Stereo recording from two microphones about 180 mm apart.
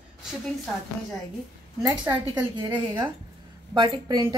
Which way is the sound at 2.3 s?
25° right (ahead or behind).